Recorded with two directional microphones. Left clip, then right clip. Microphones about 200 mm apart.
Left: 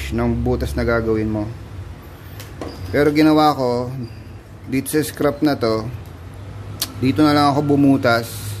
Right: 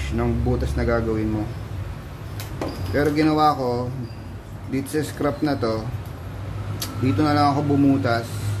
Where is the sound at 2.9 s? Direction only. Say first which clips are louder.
Left 6 dB; 55° left (ahead or behind).